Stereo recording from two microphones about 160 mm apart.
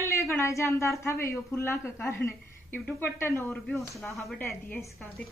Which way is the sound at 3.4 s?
5° left (ahead or behind).